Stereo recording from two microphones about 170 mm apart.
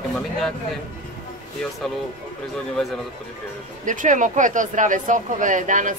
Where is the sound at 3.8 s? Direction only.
50° right (ahead or behind).